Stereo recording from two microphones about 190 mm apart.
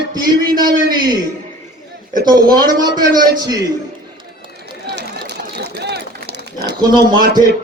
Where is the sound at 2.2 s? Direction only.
20° right (ahead or behind).